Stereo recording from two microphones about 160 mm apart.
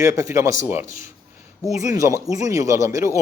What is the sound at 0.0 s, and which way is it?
A man's voice, 20° right (ahead or behind).